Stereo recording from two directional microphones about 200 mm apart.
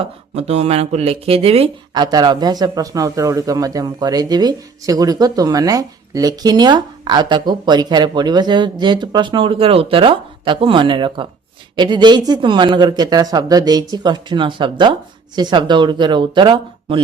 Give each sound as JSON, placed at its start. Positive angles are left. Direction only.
{"t": 0.0, "sound": "speech", "side_deg": -35}